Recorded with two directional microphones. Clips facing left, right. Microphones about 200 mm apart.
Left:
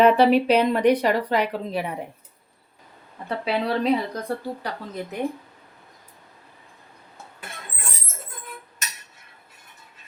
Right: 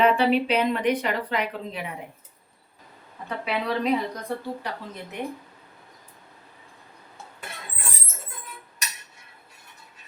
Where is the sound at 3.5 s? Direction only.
35° left (ahead or behind).